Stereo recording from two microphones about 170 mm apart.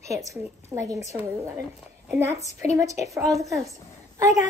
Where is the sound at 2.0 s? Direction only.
15° right (ahead or behind).